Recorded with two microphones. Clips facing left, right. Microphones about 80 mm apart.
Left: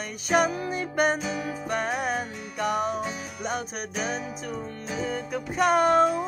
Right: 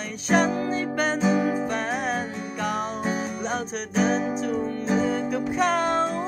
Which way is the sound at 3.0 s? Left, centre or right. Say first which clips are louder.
Right 6 dB; right.